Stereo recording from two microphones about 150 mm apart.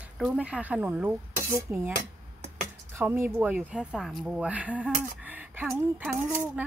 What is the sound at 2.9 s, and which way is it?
Speech, 15° right (ahead or behind).